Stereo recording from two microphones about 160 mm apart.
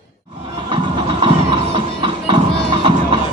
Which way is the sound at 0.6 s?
30° right (ahead or behind).